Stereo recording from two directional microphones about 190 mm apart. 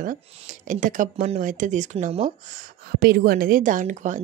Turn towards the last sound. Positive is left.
turn(degrees=-40)  # may be behind; listen again after turning